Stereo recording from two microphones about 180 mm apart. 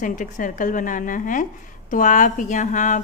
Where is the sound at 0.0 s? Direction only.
45° left (ahead or behind).